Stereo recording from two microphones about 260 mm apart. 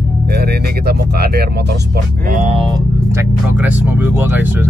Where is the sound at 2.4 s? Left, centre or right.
Right.